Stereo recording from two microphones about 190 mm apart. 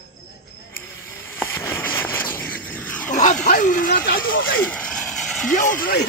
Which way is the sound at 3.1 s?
40° left (ahead or behind).